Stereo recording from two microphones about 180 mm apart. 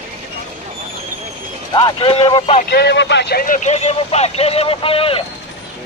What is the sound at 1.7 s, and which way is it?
Speech, 30° left (ahead or behind).